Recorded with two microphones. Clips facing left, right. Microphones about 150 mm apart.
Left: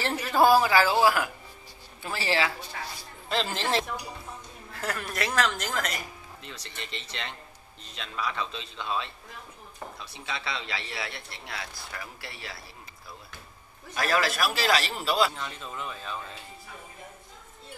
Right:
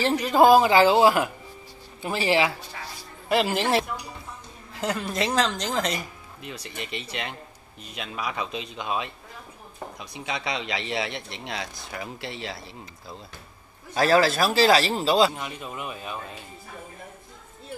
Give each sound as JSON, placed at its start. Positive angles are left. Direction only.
{"t": 0.0, "sound": "speech", "side_deg": -15}
{"t": 6.4, "sound": "speech", "side_deg": -10}
{"t": 13.9, "sound": "speech", "side_deg": -30}